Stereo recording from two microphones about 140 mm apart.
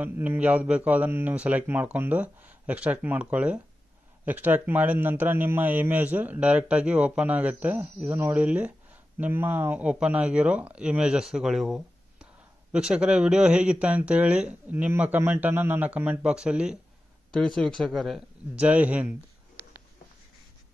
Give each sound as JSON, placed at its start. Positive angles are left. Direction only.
{"t": 0.0, "sound": "a man's voice", "side_deg": -10}
{"t": 17.3, "sound": "speech", "side_deg": 5}
{"t": 18.6, "sound": "a man's voice", "side_deg": -10}